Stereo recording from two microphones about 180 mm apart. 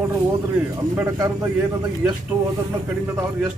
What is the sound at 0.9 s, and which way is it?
Speech, 20° right (ahead or behind).